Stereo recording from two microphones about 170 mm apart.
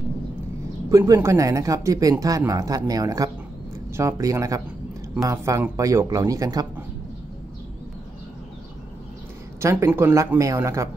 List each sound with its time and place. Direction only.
0.8 s speech: 20° right (ahead or behind)
9.6 s speech: 15° right (ahead or behind)